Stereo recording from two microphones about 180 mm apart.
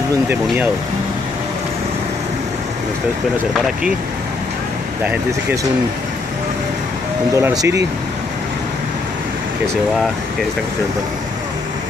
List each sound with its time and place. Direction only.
5.0 s speech: 10° right (ahead or behind)
7.3 s speech: 15° right (ahead or behind)